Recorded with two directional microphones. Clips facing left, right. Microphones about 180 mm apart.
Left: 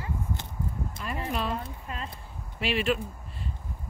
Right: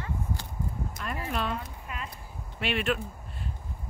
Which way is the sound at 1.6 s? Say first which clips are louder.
Left 2 dB; 30° left (ahead or behind).